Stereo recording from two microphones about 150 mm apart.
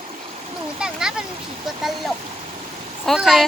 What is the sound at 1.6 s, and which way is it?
Speech, centre (ahead or behind).